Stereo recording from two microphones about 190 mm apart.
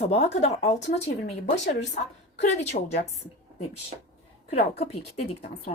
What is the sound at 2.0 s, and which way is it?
Speech, 50° left (ahead or behind).